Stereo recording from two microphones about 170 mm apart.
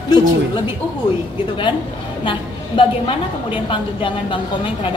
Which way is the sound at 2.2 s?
30° left (ahead or behind).